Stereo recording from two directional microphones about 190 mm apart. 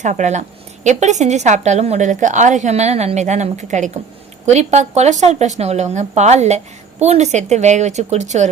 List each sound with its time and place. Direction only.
0.0 s a woman's voice: 40° right (ahead or behind)